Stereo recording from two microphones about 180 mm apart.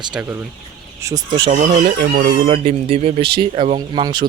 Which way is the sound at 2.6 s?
35° right (ahead or behind).